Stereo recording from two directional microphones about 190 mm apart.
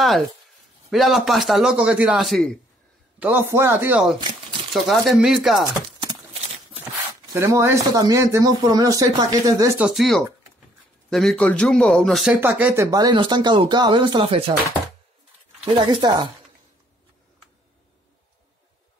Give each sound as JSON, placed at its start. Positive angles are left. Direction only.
{"t": 0.8, "sound": "a man's voice", "side_deg": 0}
{"t": 3.2, "sound": "speech", "side_deg": -10}
{"t": 4.2, "sound": "crumpling", "side_deg": -25}
{"t": 4.7, "sound": "a man's voice", "side_deg": 0}
{"t": 7.3, "sound": "speech", "side_deg": -15}
{"t": 9.8, "sound": "a man's voice", "side_deg": -5}
{"t": 12.4, "sound": "speech", "side_deg": -10}
{"t": 15.7, "sound": "speech", "side_deg": -25}